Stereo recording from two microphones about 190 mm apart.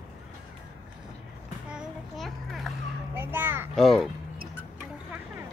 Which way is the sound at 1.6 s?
Centre (ahead or behind).